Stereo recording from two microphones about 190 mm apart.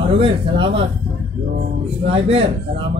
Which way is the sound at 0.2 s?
30° right (ahead or behind).